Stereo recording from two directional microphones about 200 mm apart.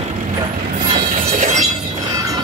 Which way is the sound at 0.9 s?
35° right (ahead or behind).